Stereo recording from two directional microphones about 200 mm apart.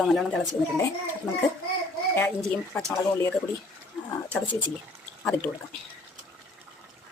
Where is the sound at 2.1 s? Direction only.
5° left (ahead or behind).